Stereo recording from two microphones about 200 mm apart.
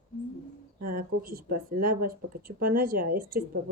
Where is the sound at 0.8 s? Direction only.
45° right (ahead or behind).